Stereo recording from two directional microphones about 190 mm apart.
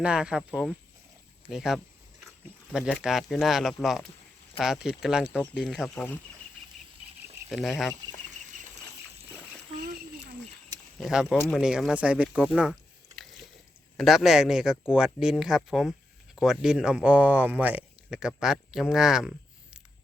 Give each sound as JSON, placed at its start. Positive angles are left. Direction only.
{"t": 0.0, "sound": "speech", "side_deg": -5}
{"t": 7.5, "sound": "speech", "side_deg": 0}
{"t": 8.5, "sound": "bird flight", "side_deg": -40}
{"t": 11.0, "sound": "speech", "side_deg": -5}
{"t": 13.9, "sound": "speech", "side_deg": 0}